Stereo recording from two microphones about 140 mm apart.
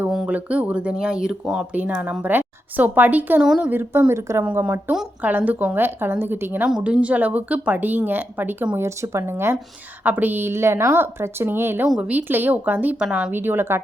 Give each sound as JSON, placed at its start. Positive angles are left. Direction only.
{"t": 0.1, "sound": "speech", "side_deg": -5}